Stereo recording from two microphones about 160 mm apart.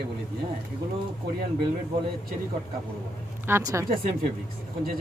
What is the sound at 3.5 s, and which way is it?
Speech, 20° right (ahead or behind).